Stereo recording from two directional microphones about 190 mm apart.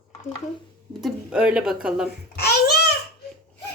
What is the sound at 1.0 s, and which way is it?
Speech, 5° right (ahead or behind).